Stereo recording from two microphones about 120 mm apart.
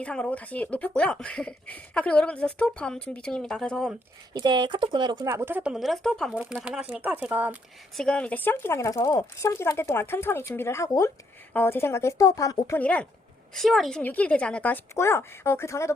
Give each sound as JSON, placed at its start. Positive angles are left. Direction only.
{"t": 0.0, "sound": "speech", "side_deg": 10}
{"t": 4.4, "sound": "speech", "side_deg": -40}
{"t": 5.2, "sound": "speech", "side_deg": -20}
{"t": 5.7, "sound": "speech", "side_deg": 0}
{"t": 6.3, "sound": "speech", "side_deg": -10}
{"t": 7.9, "sound": "speech", "side_deg": 5}
{"t": 12.8, "sound": "speech", "side_deg": 10}
{"t": 14.0, "sound": "speech", "side_deg": 15}